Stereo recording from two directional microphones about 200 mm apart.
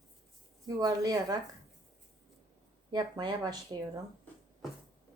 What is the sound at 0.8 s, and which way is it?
Speech, 20° right (ahead or behind).